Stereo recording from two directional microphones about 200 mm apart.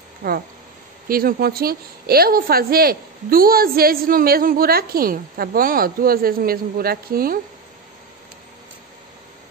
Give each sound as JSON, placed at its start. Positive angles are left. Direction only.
{"t": 0.2, "sound": "a woman's voice", "side_deg": -50}